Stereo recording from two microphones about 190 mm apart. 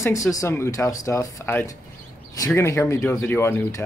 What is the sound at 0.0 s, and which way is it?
Speech, 15° left (ahead or behind).